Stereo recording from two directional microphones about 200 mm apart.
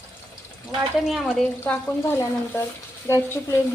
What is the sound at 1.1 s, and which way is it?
Speech, centre (ahead or behind).